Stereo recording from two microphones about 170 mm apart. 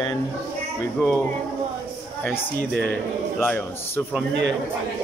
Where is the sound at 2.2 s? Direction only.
10° left (ahead or behind).